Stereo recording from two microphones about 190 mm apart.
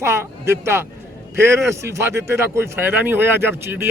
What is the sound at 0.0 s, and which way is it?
Speech, 15° right (ahead or behind).